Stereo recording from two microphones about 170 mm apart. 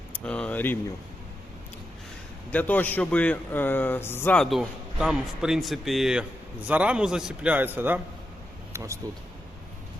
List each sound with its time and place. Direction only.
0.1 s speech: 5° left (ahead or behind)
2.5 s a man's voice: 10° left (ahead or behind); by 9.0 s 15° right (ahead or behind)